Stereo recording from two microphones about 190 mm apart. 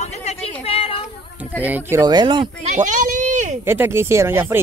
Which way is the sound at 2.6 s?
40° right (ahead or behind).